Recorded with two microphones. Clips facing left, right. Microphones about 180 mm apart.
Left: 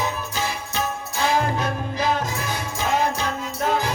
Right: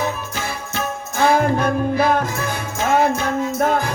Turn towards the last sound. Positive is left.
turn(degrees=-55)  # may be behind; listen again after turning